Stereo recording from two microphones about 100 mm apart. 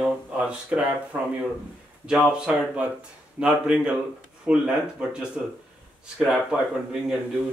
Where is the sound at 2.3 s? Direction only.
10° right (ahead or behind).